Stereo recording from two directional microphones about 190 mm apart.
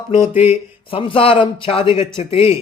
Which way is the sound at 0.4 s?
30° left (ahead or behind).